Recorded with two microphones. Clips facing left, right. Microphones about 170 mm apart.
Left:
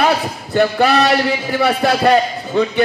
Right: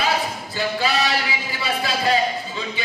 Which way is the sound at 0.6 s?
60° left (ahead or behind).